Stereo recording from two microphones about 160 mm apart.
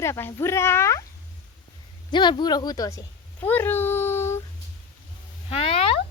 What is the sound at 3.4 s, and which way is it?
Child singing, 10° left (ahead or behind).